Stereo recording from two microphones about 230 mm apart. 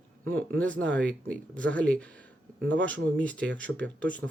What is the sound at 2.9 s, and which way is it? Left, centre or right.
Speech, centre.